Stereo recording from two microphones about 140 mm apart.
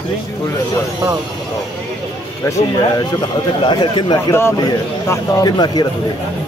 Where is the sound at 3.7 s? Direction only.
35° left (ahead or behind).